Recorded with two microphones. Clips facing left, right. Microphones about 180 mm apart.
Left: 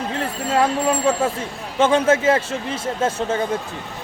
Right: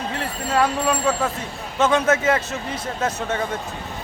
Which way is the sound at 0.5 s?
25° left (ahead or behind).